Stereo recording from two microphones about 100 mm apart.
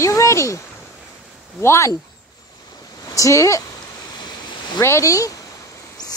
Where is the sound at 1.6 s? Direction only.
30° left (ahead or behind).